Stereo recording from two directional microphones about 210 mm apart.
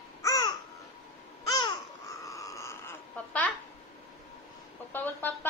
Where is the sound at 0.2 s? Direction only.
20° left (ahead or behind).